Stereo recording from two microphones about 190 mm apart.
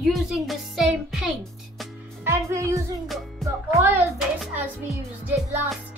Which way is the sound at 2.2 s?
15° right (ahead or behind).